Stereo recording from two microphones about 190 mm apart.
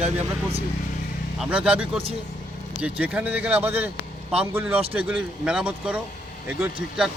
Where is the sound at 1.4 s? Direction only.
5° right (ahead or behind).